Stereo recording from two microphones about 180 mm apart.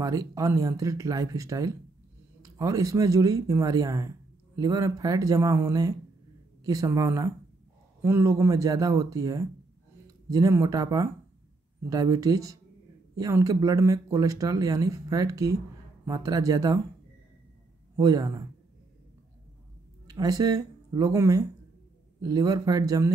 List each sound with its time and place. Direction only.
0.0 s speech: 20° right (ahead or behind)
17.9 s speech: 20° right (ahead or behind)
20.1 s speech: 20° right (ahead or behind)